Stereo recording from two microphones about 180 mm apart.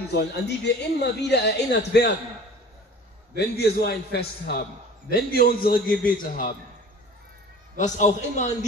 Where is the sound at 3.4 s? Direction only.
65° left (ahead or behind).